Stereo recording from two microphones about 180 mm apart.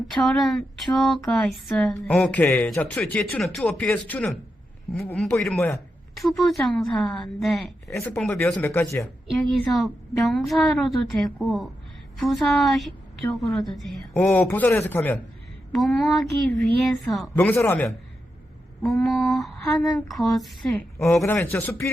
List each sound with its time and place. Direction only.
0.1 s speech: centre (ahead or behind)
7.9 s speech: 15° left (ahead or behind)
8.1 s speech: 5° left (ahead or behind)
9.4 s speech: centre (ahead or behind)
18.9 s speech: centre (ahead or behind)
21.0 s speech: 15° left (ahead or behind)